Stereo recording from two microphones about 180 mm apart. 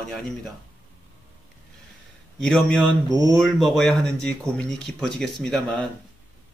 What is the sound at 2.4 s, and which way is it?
Speech, 5° left (ahead or behind).